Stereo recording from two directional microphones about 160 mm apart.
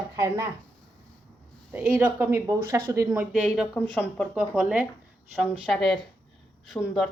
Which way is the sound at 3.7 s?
10° left (ahead or behind).